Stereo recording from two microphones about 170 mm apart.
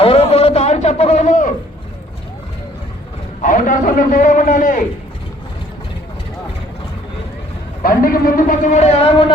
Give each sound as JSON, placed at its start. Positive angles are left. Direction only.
{"t": 0.0, "sound": "a sound", "side_deg": 35}
{"t": 3.4, "sound": "a man's voice", "side_deg": 50}
{"t": 7.8, "sound": "a man's voice", "side_deg": 60}